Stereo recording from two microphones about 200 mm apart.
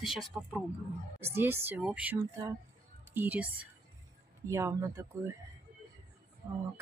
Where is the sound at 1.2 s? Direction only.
10° right (ahead or behind).